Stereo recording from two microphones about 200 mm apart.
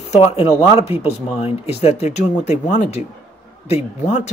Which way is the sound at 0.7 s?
10° right (ahead or behind).